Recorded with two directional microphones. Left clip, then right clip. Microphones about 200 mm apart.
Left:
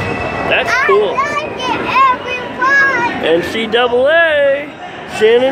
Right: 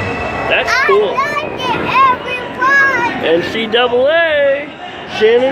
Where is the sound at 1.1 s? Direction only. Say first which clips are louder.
Even; 50° right (ahead or behind).